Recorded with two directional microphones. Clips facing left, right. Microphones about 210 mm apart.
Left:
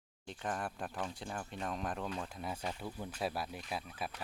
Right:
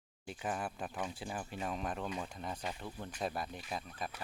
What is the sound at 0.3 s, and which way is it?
Speech, 5° right (ahead or behind).